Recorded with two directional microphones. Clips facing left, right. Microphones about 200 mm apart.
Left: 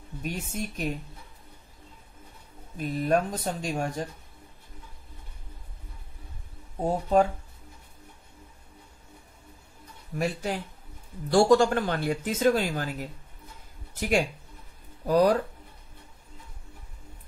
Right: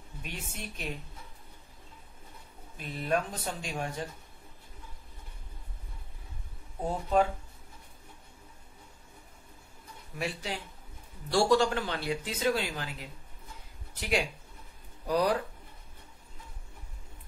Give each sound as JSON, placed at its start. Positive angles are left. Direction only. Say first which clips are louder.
{"t": 0.2, "sound": "speech", "louder": "left 9 dB", "side_deg": 45}
{"t": 2.8, "sound": "speech", "louder": "left 6 dB", "side_deg": 45}
{"t": 6.8, "sound": "speech", "louder": "left 4 dB", "side_deg": 40}
{"t": 10.1, "sound": "speech", "louder": "left 6 dB", "side_deg": 45}